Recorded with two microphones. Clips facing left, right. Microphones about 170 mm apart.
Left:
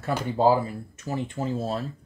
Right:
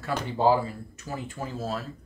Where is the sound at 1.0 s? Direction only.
25° left (ahead or behind).